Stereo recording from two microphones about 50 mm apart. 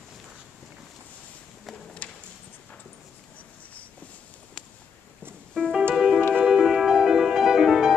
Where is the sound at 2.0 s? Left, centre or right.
Left.